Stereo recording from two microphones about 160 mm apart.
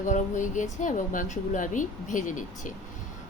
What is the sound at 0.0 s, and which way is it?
A woman's voice, 50° left (ahead or behind).